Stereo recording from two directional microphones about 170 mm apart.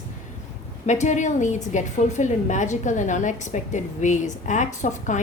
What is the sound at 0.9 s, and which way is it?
A woman's voice, 45° left (ahead or behind).